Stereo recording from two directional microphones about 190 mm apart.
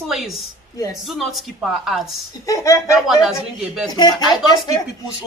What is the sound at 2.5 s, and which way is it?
Speech, 15° left (ahead or behind).